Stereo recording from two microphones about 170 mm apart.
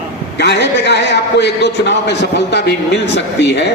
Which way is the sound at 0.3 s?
90° left.